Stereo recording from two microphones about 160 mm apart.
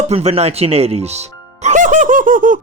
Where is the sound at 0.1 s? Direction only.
40° right (ahead or behind).